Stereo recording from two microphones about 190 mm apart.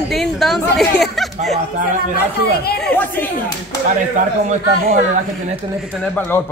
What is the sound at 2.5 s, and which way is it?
Speech, 55° left (ahead or behind).